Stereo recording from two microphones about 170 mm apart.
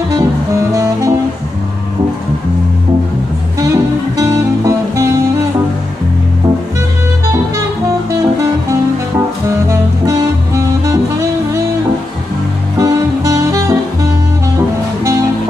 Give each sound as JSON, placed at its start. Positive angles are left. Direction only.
{"t": 0.1, "sound": "music", "side_deg": -20}
{"t": 3.5, "sound": "music", "side_deg": -20}
{"t": 9.5, "sound": "music", "side_deg": -15}
{"t": 12.7, "sound": "music", "side_deg": -20}